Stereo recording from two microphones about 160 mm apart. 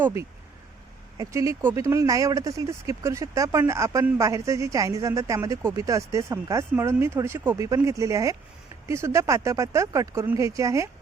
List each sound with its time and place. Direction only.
0.0 s speech: 15° right (ahead or behind)